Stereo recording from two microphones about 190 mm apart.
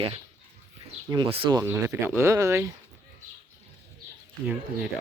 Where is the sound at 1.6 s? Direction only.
15° right (ahead or behind).